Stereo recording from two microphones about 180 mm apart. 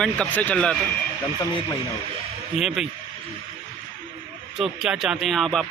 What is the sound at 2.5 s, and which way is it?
Speech, 5° right (ahead or behind).